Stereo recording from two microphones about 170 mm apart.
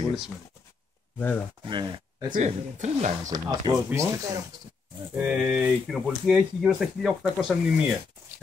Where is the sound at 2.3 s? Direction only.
45° right (ahead or behind).